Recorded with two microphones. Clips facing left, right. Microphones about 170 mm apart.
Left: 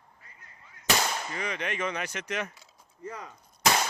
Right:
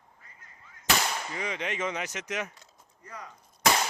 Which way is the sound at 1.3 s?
20° right (ahead or behind).